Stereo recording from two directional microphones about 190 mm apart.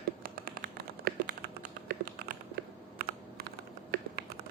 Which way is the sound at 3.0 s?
50° right (ahead or behind).